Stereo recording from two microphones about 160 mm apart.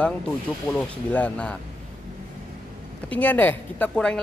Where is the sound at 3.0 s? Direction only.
10° left (ahead or behind).